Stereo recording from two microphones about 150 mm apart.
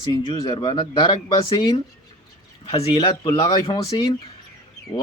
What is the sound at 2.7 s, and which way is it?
Speech, 40° left (ahead or behind).